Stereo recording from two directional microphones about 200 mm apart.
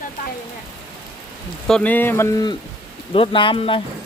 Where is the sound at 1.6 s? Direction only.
5° left (ahead or behind).